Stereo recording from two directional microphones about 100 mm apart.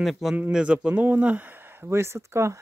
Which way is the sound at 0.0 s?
5° right (ahead or behind).